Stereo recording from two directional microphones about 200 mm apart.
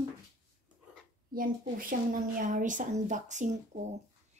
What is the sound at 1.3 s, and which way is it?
A woman's voice, 45° right (ahead or behind).